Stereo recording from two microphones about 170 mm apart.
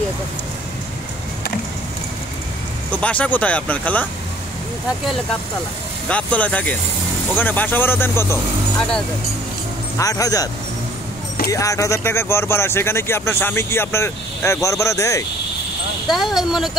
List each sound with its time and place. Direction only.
2.9 s speech: 10° left (ahead or behind)
6.0 s speech: 10° left (ahead or behind)
9.9 s speech: 20° left (ahead or behind)
16.1 s speech: centre (ahead or behind)